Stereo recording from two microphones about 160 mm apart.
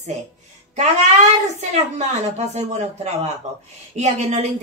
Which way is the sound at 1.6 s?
45° right (ahead or behind).